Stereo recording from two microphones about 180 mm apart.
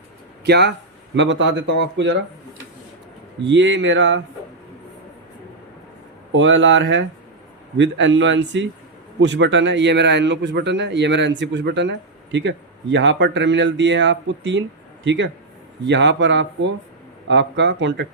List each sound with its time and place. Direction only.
0.4 s speech: 65° right (ahead or behind)
1.1 s speech: 90° right
3.4 s speech: 90° right
6.3 s speech: 90° right
9.2 s speech: 80° right